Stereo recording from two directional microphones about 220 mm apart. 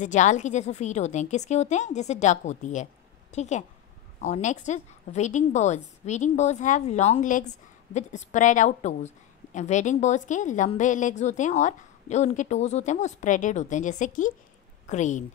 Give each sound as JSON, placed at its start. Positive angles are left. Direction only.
{"t": 0.0, "sound": "a woman's voice", "side_deg": 35}